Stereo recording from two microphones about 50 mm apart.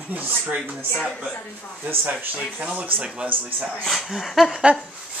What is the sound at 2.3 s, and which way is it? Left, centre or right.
Speech, right.